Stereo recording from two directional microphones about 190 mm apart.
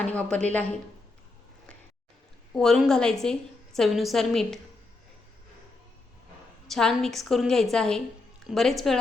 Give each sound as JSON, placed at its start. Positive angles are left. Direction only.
{"t": 0.0, "sound": "a woman's voice", "side_deg": 5}
{"t": 2.5, "sound": "a woman's voice", "side_deg": 0}
{"t": 6.7, "sound": "a woman's voice", "side_deg": 0}